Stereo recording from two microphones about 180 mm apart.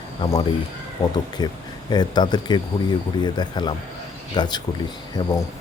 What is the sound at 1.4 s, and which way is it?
Speech, 20° left (ahead or behind).